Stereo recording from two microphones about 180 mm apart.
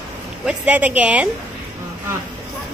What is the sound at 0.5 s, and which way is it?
Speech, 5° right (ahead or behind).